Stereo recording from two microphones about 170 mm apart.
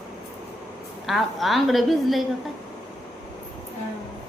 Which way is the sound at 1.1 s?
Centre (ahead or behind).